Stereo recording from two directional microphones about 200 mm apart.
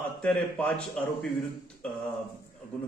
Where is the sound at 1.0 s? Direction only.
5° left (ahead or behind).